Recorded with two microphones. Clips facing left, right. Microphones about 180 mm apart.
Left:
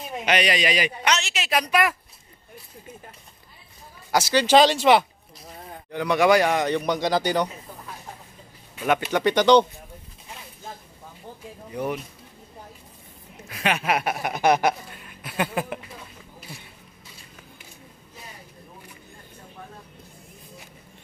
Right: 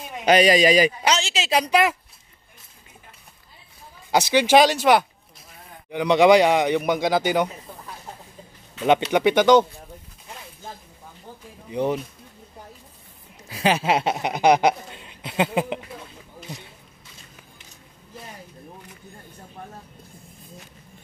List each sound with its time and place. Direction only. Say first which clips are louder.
0.2 s a woman's voice: right 7 dB; 40° right (ahead or behind)
4.1 s speech: right 1 dB; 15° right (ahead or behind); by 5.0 s centre (ahead or behind)
5.9 s speech: right 4 dB; 20° right (ahead or behind)
9.1 s speech: even; 10° right (ahead or behind)
11.7 s a woman's voice: right 5 dB; 25° right (ahead or behind)
13.5 s speech: right 4 dB; 30° right (ahead or behind)